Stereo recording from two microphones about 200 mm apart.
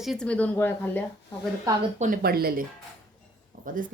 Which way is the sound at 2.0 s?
45° right (ahead or behind).